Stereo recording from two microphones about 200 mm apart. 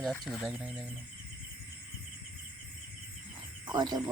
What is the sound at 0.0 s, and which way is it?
Speech, 5° left (ahead or behind).